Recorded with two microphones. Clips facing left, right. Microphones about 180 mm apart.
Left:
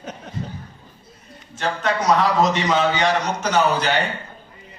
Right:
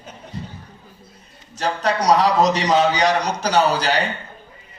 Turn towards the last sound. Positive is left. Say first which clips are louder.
# right 1 dB
turn(degrees=-35)  # may be behind; listen again after turning